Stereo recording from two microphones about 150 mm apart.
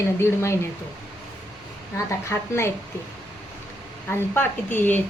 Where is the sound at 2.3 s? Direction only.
15° left (ahead or behind).